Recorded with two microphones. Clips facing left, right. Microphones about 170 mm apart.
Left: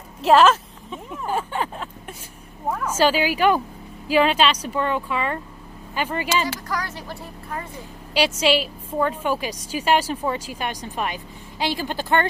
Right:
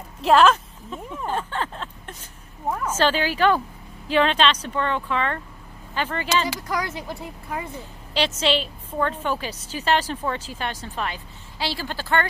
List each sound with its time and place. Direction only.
0.2 s a woman's voice: centre (ahead or behind)
6.5 s speech: 15° right (ahead or behind)
8.1 s a woman's voice: 10° left (ahead or behind)